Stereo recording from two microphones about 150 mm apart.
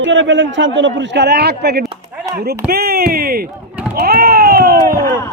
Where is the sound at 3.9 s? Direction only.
90° right.